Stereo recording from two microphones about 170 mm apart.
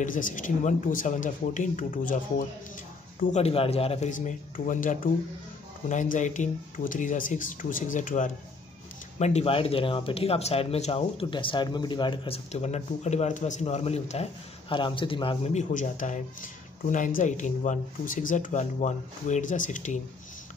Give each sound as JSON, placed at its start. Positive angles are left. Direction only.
{"t": 0.0, "sound": "speech", "side_deg": 50}
{"t": 3.3, "sound": "speech", "side_deg": 40}
{"t": 4.1, "sound": "speech", "side_deg": 50}
{"t": 9.2, "sound": "speech", "side_deg": 35}